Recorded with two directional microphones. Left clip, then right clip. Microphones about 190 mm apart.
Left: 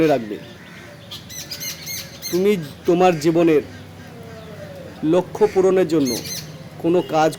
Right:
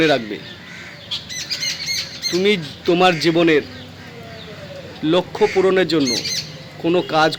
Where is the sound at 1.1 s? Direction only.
75° left (ahead or behind).